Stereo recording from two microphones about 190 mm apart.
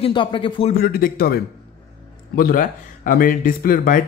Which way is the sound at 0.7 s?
50° left (ahead or behind).